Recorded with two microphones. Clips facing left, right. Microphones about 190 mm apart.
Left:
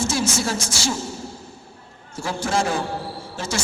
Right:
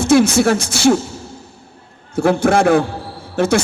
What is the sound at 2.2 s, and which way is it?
Speech, 60° right (ahead or behind).